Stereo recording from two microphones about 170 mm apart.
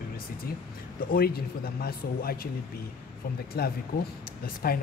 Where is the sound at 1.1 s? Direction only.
65° left (ahead or behind).